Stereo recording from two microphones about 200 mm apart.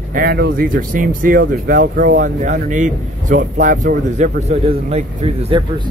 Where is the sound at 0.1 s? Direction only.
50° right (ahead or behind).